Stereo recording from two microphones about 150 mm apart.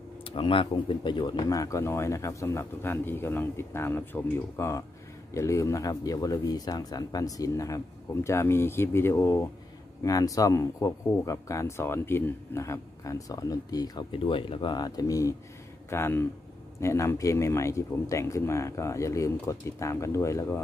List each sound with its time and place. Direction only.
0.2 s speech: 35° left (ahead or behind); by 20.6 s 20° left (ahead or behind)